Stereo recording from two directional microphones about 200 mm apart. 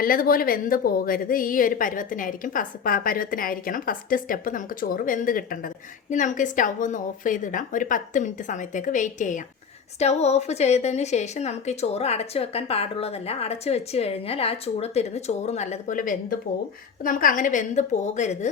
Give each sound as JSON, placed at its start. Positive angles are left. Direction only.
{"t": 0.0, "sound": "a woman's voice", "side_deg": 45}